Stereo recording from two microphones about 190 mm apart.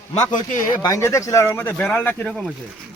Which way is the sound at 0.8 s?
15° left (ahead or behind).